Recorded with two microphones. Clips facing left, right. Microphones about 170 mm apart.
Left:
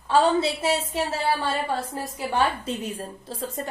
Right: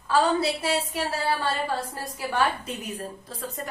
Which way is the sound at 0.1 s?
25° left (ahead or behind).